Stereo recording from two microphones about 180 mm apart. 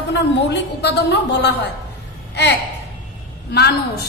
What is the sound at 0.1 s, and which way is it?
A woman's voice, 70° left (ahead or behind).